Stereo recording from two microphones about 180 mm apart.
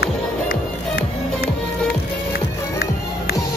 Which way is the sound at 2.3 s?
60° left (ahead or behind).